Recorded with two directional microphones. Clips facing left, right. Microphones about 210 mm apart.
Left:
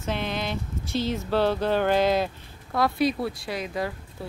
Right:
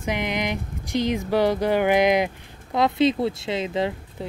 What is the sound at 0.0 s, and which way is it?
Speech, 15° right (ahead or behind).